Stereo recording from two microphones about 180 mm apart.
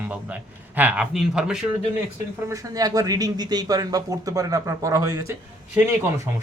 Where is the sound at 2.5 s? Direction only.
20° right (ahead or behind).